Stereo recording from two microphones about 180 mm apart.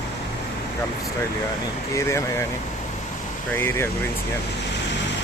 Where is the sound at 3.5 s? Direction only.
15° left (ahead or behind).